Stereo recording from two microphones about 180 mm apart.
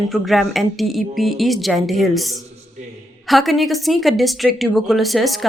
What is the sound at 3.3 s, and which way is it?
A woman's voice, centre (ahead or behind).